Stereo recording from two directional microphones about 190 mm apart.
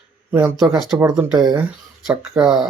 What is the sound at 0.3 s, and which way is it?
Speech, 10° right (ahead or behind).